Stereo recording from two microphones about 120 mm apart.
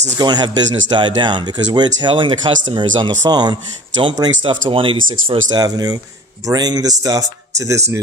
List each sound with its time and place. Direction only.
0.2 s speech: 35° right (ahead or behind)
5.5 s speech: 30° right (ahead or behind)